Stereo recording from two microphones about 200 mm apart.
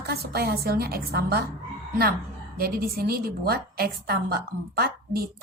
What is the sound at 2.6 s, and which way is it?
A woman's voice, 50° right (ahead or behind).